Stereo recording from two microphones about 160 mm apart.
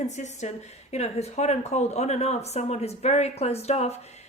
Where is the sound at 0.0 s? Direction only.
45° left (ahead or behind).